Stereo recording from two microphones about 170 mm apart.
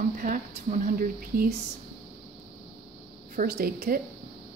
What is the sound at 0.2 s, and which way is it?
Speech, 50° right (ahead or behind).